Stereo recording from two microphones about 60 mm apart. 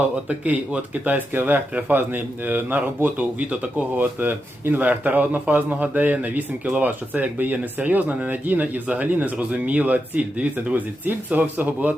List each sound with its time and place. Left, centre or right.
0.3 s a man's voice: right
3.9 s a man's voice: right